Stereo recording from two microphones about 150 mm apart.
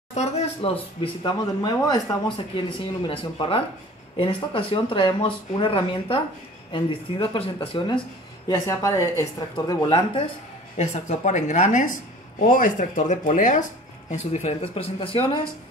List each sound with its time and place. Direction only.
0.1 s speech: 45° left (ahead or behind)
1.6 s speech: 25° left (ahead or behind)
8.5 s a woman's voice: 20° left (ahead or behind)
10.8 s speech: 50° left (ahead or behind)
14.3 s speech: 45° left (ahead or behind)